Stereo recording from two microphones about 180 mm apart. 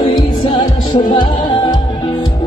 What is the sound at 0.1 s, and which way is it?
Music, 25° left (ahead or behind).